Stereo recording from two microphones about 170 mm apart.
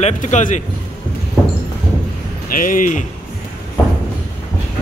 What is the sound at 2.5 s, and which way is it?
Speech, 55° left (ahead or behind).